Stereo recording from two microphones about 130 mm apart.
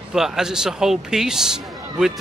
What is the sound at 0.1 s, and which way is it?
Speech, 5° right (ahead or behind).